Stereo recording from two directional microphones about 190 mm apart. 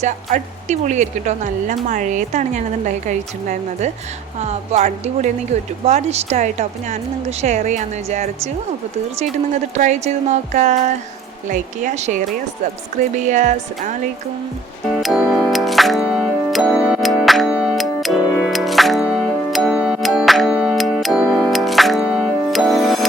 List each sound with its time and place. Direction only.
0.0 s speech: 40° right (ahead or behind)
9.7 s speech: 35° right (ahead or behind)
13.2 s speech: 40° right (ahead or behind)
15.0 s music: centre (ahead or behind)